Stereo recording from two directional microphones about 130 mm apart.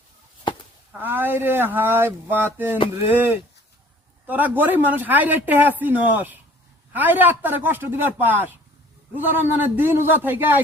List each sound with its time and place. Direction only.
0.9 s speech: 15° right (ahead or behind)